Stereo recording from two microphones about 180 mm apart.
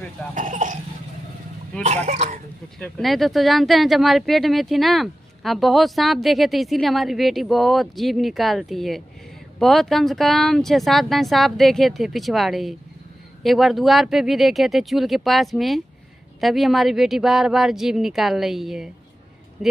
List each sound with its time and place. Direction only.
0.3 s cough: 45° right (ahead or behind)
2.0 s speech: 40° right (ahead or behind)
2.8 s speech: centre (ahead or behind)